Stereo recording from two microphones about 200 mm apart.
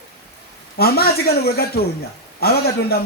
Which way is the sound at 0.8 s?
50° left (ahead or behind).